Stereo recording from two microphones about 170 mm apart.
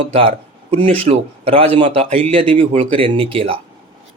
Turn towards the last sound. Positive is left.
turn(degrees=-35)  # may be behind; listen again after turning